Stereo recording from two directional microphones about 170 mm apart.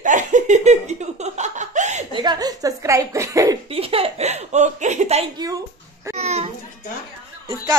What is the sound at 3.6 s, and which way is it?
Speech, 35° right (ahead or behind).